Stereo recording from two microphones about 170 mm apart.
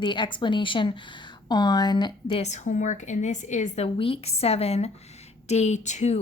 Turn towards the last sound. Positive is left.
turn(degrees=40)  # may be behind; listen again after turning